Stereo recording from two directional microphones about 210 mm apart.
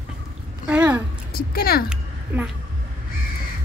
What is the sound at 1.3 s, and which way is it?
Speech, 45° left (ahead or behind).